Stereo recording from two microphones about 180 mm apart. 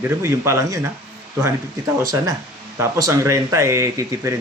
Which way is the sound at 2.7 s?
15° right (ahead or behind).